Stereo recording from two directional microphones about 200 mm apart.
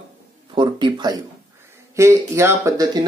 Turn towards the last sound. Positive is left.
turn(degrees=-20)  # may be behind; listen again after turning